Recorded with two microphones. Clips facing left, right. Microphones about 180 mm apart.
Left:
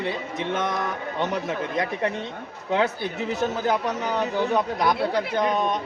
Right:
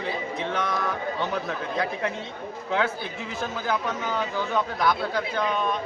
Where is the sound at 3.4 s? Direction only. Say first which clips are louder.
Left 3 dB; 20° left (ahead or behind).